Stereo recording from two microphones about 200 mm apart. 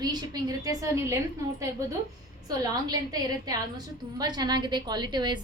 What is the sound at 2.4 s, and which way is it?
A woman's voice, 20° right (ahead or behind).